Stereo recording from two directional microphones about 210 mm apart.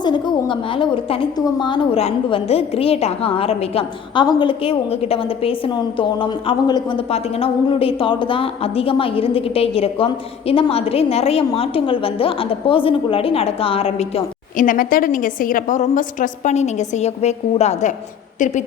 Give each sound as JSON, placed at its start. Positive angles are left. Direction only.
{"t": 0.0, "sound": "a woman's voice", "side_deg": 20}